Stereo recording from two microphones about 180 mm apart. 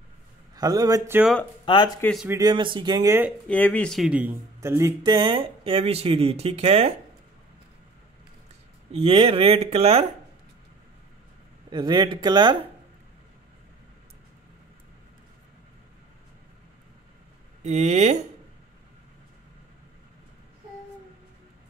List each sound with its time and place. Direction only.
0.6 s speech: 20° right (ahead or behind)
1.7 s speech: 25° left (ahead or behind)
2.3 s speech: 25° right (ahead or behind)
3.4 s speech: 10° left (ahead or behind); by 6.9 s 35° right (ahead or behind)
8.9 s speech: 30° right (ahead or behind)
11.7 s speech: 25° right (ahead or behind)
17.6 s speech: 40° right (ahead or behind)